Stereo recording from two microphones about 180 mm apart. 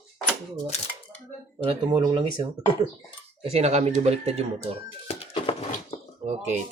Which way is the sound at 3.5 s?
35° right (ahead or behind).